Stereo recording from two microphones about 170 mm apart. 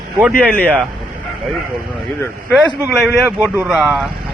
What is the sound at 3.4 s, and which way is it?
Speech, centre (ahead or behind).